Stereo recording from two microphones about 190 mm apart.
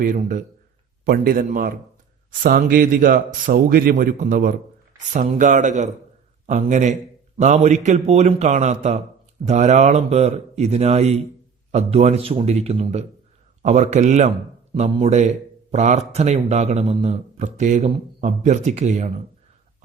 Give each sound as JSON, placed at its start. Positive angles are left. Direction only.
{"t": 0.0, "sound": "a man's voice", "side_deg": -45}